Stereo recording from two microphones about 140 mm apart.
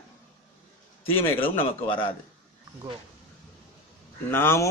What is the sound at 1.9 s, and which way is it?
Speech, 35° left (ahead or behind).